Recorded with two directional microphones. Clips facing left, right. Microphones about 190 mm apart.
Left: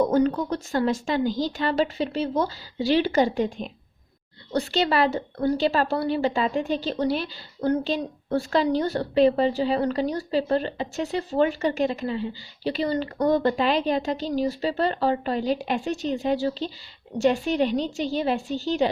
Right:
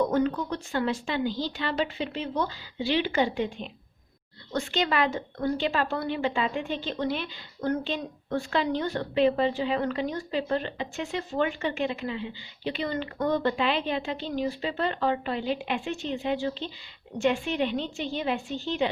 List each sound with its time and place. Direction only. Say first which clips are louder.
0.0 s a woman's voice: left 4 dB; 40° left (ahead or behind)